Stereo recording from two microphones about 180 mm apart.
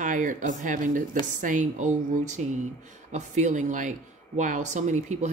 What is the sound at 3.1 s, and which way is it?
Speech, 45° right (ahead or behind).